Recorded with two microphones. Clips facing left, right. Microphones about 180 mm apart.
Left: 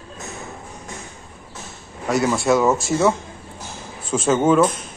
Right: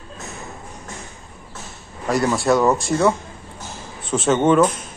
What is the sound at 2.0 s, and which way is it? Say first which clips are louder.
A man's voice: even; centre (ahead or behind).